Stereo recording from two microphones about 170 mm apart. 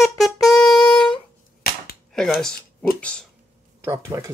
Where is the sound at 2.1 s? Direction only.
5° left (ahead or behind).